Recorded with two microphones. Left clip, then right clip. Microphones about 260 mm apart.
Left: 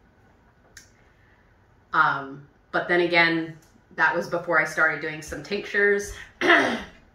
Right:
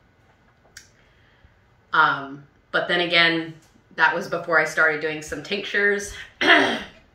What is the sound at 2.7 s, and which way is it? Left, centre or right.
Speech, right.